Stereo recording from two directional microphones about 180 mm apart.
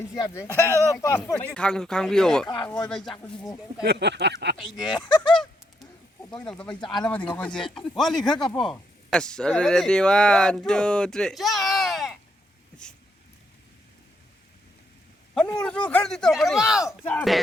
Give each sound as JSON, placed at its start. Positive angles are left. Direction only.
{"t": 0.2, "sound": "speech", "side_deg": 20}
{"t": 1.5, "sound": "speech", "side_deg": 5}
{"t": 3.8, "sound": "a sound", "side_deg": -70}
{"t": 4.9, "sound": "speech", "side_deg": 25}
{"t": 6.3, "sound": "speech", "side_deg": 5}
{"t": 15.4, "sound": "speech", "side_deg": 5}